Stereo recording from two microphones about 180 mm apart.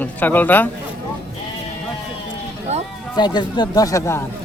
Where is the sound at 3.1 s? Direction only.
25° left (ahead or behind).